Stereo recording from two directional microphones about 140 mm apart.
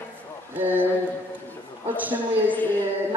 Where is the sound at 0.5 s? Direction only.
15° right (ahead or behind).